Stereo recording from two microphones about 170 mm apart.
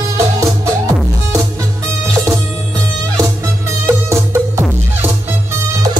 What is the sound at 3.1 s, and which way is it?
Music, 15° right (ahead or behind).